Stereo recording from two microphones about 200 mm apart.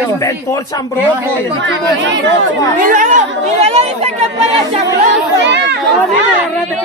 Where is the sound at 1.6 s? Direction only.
65° right (ahead or behind).